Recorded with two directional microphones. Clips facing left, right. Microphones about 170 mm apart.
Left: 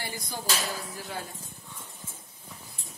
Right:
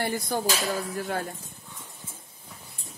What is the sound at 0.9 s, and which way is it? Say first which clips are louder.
Speech: right 8 dB; 50° right (ahead or behind).